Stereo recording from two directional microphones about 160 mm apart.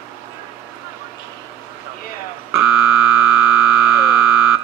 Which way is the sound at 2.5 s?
5° right (ahead or behind).